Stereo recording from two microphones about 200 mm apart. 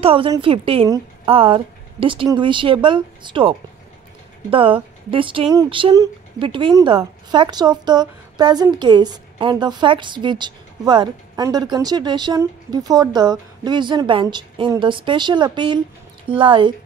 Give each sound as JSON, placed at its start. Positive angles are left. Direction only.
{"t": 0.0, "sound": "a woman's voice", "side_deg": -25}